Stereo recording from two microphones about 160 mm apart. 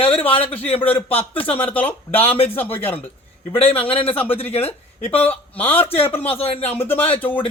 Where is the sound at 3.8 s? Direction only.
35° left (ahead or behind).